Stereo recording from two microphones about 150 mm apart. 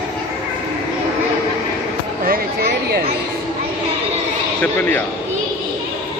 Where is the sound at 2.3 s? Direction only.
90° right.